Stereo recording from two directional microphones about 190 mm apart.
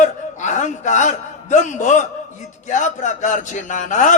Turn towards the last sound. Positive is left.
turn(degrees=40)  # may be behind; listen again after turning